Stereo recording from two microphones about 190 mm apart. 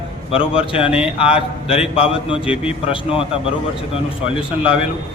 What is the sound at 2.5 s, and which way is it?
Speech, 5° right (ahead or behind).